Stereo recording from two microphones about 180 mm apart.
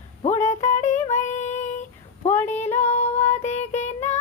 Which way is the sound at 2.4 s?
40° left (ahead or behind).